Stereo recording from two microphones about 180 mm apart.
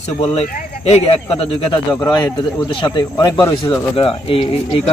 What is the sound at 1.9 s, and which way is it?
A man's voice, 20° left (ahead or behind).